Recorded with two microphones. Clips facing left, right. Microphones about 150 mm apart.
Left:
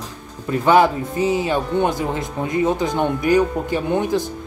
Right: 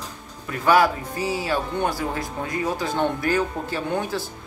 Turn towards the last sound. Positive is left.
turn(degrees=20)  # may be behind; listen again after turning